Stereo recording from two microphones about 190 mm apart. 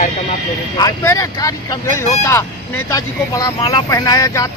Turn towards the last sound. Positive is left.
turn(degrees=20)  # may be behind; listen again after turning